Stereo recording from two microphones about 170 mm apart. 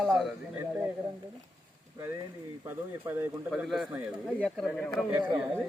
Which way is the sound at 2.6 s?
15° right (ahead or behind).